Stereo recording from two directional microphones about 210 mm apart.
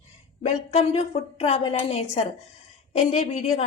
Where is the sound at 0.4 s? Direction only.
30° left (ahead or behind).